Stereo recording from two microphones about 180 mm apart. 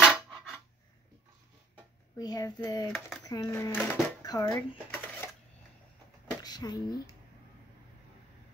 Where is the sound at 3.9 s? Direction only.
20° left (ahead or behind).